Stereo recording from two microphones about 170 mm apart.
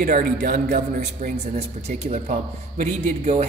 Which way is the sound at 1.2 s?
40° right (ahead or behind).